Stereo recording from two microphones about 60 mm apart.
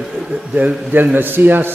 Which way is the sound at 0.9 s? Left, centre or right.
Right.